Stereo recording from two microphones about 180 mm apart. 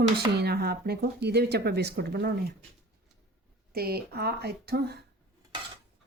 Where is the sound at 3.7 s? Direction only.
60° right (ahead or behind).